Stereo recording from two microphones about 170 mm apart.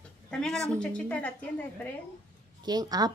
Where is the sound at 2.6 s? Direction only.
25° right (ahead or behind).